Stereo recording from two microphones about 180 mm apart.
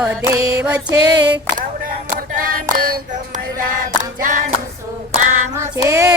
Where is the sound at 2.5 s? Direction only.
55° right (ahead or behind).